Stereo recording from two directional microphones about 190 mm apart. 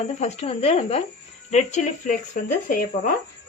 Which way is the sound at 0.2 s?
35° left (ahead or behind).